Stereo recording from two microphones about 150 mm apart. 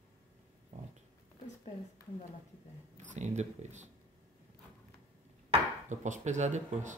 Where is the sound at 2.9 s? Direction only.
50° right (ahead or behind).